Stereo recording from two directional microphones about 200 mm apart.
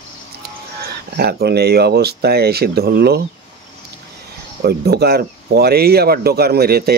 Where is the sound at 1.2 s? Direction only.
50° right (ahead or behind).